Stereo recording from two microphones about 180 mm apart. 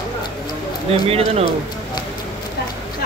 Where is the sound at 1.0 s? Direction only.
35° right (ahead or behind).